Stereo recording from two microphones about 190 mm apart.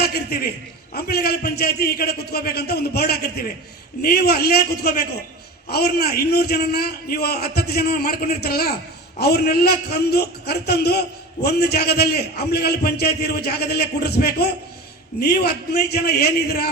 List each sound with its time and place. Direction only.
0.0 s a man's voice: 55° left (ahead or behind)